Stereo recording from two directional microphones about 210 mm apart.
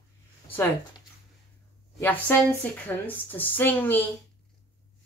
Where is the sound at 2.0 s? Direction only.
10° left (ahead or behind).